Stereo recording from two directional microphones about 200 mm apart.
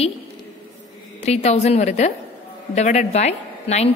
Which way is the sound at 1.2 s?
35° left (ahead or behind).